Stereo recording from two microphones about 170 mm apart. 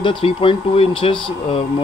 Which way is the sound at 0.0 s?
30° left (ahead or behind).